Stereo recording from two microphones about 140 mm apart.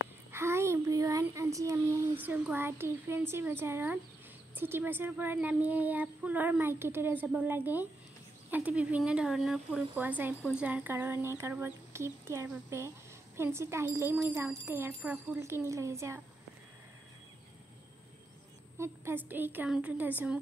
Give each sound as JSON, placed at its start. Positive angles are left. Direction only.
{"t": 0.3, "sound": "child singing", "side_deg": -20}
{"t": 2.1, "sound": "speech", "side_deg": -10}
{"t": 18.8, "sound": "speech", "side_deg": -15}